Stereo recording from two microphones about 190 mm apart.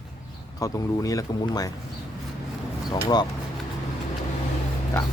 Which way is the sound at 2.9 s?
20° left (ahead or behind).